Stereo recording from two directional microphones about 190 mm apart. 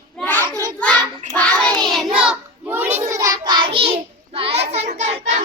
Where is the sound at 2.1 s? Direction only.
5° right (ahead or behind).